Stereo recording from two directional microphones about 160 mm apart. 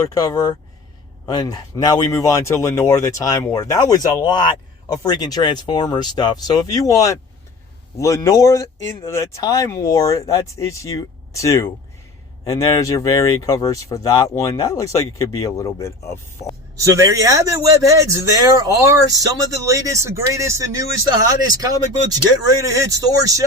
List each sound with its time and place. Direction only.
0.0 s speech: 25° left (ahead or behind)
16.8 s speech: 20° right (ahead or behind)